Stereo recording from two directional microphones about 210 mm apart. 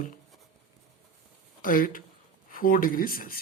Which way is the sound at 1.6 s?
40° left (ahead or behind).